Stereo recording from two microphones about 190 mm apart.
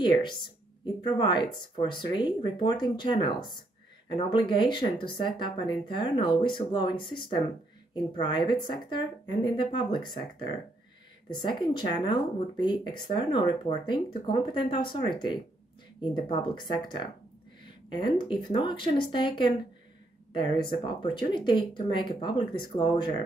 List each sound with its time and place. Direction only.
0.0 s speech: 25° left (ahead or behind)
11.3 s speech: 25° left (ahead or behind)